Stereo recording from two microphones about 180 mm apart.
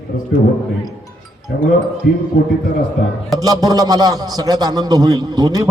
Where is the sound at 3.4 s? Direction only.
20° right (ahead or behind).